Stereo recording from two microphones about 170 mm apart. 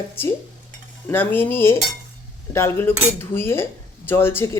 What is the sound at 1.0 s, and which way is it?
Speech, 10° left (ahead or behind).